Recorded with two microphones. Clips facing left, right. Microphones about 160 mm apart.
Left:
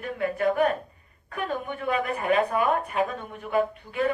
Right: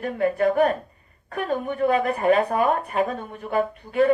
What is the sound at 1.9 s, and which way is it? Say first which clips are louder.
Speech: right 4 dB; 40° right (ahead or behind).